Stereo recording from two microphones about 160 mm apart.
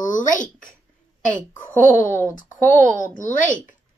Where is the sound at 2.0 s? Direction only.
15° left (ahead or behind).